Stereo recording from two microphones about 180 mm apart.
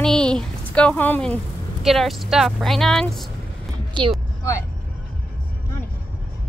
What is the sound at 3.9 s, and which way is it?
Speech, 30° right (ahead or behind).